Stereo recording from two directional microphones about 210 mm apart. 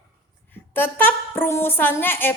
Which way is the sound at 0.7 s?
10° left (ahead or behind).